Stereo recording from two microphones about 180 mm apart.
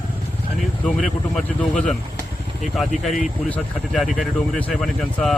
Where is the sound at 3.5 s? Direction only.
Centre (ahead or behind).